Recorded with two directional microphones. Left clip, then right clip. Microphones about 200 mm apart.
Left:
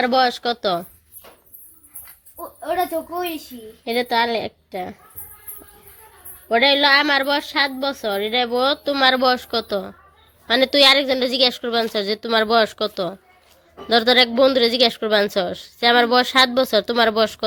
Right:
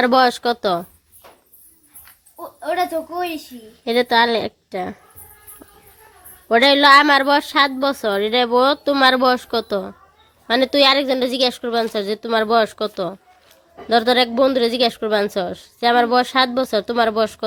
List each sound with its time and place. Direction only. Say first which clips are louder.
0.0 s a woman's voice: right 3 dB; 20° right (ahead or behind)
2.6 s a woman's voice: right 1 dB; centre (ahead or behind)
3.8 s a woman's voice: right 4 dB; 20° right (ahead or behind)
6.5 s a woman's voice: right 4 dB; 20° right (ahead or behind); by 17.4 s 5° right (ahead or behind)